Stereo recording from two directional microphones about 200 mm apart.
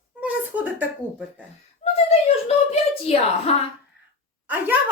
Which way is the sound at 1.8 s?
30° left (ahead or behind).